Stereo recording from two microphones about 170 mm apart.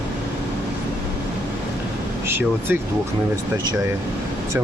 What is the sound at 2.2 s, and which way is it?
Speech, 15° right (ahead or behind).